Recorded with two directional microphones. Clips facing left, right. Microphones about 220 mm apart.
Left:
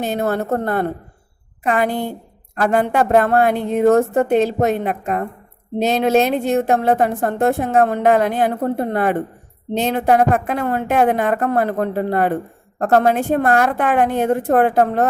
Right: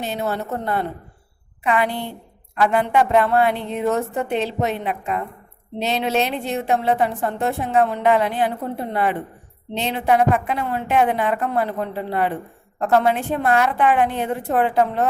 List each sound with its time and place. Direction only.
0.0 s a woman's voice: 50° left (ahead or behind)